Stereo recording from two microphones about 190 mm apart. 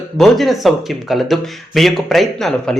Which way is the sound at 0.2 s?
Centre (ahead or behind).